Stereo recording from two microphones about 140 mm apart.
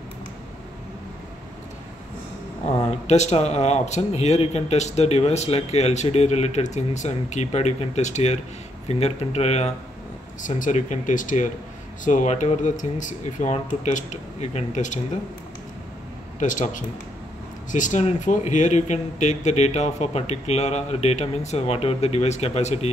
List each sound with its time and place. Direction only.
2.6 s speech: 50° left (ahead or behind)
10.6 s speech: 60° left (ahead or behind)
16.3 s speech: 60° left (ahead or behind)